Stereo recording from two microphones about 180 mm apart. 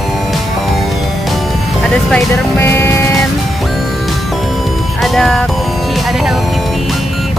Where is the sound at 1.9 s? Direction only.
5° left (ahead or behind).